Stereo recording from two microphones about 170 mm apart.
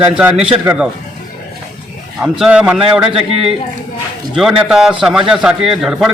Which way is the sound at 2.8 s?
35° right (ahead or behind).